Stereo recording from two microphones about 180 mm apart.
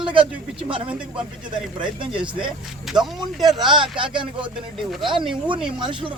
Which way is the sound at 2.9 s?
Centre (ahead or behind).